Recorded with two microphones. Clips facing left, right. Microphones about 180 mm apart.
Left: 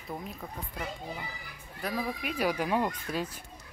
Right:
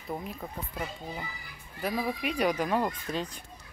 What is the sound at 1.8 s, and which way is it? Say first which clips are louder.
Speech: right 3 dB; centre (ahead or behind).